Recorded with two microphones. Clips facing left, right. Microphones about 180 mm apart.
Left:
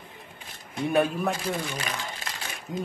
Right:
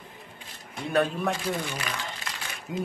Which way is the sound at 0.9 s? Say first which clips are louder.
Left 1 dB; 10° left (ahead or behind).